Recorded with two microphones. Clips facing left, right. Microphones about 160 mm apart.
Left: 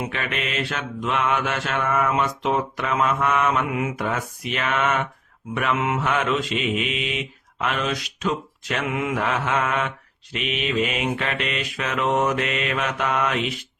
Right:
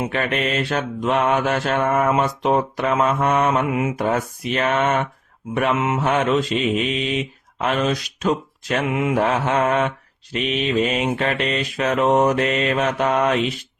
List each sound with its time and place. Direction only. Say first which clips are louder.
0.1 s mantra: right 6 dB; 40° right (ahead or behind)
6.1 s mantra: right 7 dB; 35° right (ahead or behind)
8.9 s mantra: right 3 dB; 20° right (ahead or behind)
9.1 s mantra: right 6 dB; 35° right (ahead or behind)